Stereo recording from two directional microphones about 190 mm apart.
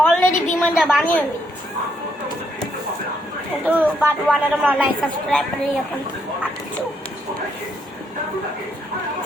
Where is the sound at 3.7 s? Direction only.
10° right (ahead or behind).